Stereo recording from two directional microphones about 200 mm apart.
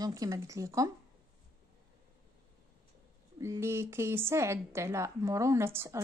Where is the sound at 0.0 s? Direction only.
15° right (ahead or behind).